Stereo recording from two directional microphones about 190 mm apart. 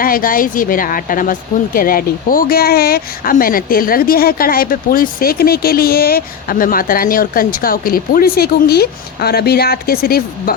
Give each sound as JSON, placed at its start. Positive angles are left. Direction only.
{"t": 0.0, "sound": "speech", "side_deg": 50}